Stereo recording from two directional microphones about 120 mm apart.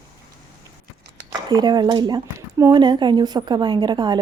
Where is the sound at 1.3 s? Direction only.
35° right (ahead or behind).